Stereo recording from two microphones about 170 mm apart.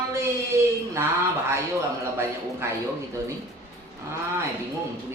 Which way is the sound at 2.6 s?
15° right (ahead or behind).